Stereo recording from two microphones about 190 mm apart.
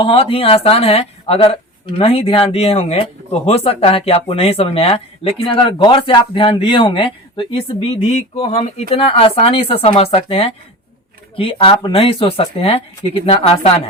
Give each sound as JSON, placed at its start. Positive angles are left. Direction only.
{"t": 0.0, "sound": "speech", "side_deg": 30}